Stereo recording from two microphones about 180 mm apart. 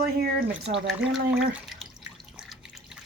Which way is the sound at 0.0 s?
60° right (ahead or behind).